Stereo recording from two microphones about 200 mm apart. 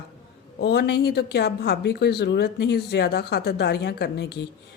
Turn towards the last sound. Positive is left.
turn(degrees=55)  # may be behind; listen again after turning